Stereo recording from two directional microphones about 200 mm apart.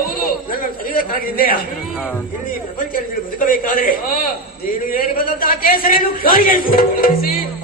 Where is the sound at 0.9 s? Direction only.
45° left (ahead or behind).